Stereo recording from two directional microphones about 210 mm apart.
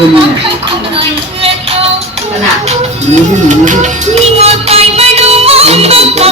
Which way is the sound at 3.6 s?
35° right (ahead or behind).